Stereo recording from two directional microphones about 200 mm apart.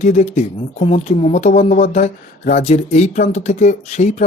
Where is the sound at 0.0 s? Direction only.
35° left (ahead or behind).